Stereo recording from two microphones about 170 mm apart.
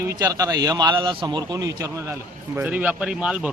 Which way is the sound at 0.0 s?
15° right (ahead or behind).